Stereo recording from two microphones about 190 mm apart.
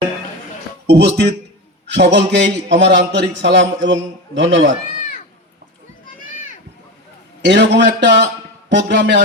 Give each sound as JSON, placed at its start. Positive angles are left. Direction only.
{"t": 0.9, "sound": "a man's voice", "side_deg": -60}
{"t": 3.8, "sound": "a man's voice", "side_deg": -80}
{"t": 7.4, "sound": "a man's voice", "side_deg": -65}